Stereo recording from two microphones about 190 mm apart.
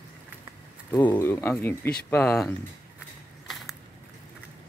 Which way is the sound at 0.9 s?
10° left (ahead or behind).